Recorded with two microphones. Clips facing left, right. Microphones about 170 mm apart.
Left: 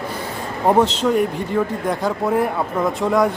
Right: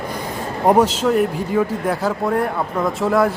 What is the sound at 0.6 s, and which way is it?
A man's voice, 10° right (ahead or behind).